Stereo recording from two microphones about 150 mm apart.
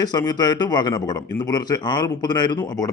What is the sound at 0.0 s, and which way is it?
Speech, 25° left (ahead or behind).